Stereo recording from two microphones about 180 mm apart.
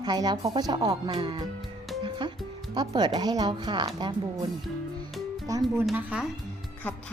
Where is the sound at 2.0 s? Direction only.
25° right (ahead or behind).